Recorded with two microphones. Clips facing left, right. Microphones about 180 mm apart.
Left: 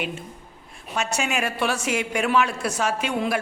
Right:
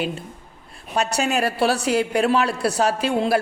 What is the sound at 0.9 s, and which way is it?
A man's voice, 35° right (ahead or behind).